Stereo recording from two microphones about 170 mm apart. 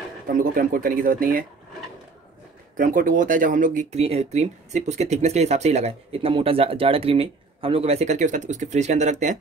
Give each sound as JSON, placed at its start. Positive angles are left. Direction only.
{"t": 0.3, "sound": "speech", "side_deg": -50}
{"t": 2.8, "sound": "speech", "side_deg": -55}